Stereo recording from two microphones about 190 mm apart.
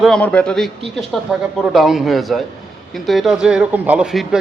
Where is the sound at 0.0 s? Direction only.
5° left (ahead or behind).